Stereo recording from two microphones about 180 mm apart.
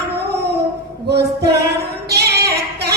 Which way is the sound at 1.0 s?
65° right (ahead or behind).